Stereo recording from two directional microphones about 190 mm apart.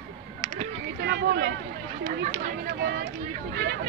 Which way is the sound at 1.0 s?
65° right (ahead or behind).